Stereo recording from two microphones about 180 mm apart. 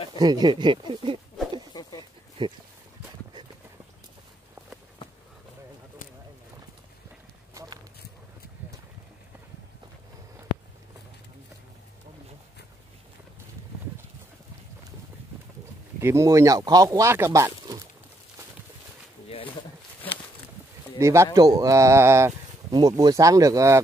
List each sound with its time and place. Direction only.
0.1 s speech: 25° right (ahead or behind)
1.7 s a sound: 20° left (ahead or behind)
2.4 s speech: 25° right (ahead or behind)
16.0 s speech: 15° right (ahead or behind)
21.0 s speech: 15° right (ahead or behind)